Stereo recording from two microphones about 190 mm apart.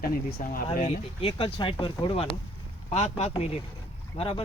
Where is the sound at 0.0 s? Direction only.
50° left (ahead or behind).